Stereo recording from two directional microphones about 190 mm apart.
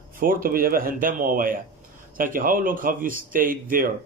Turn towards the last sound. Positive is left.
turn(degrees=-45)  # may be behind; listen again after turning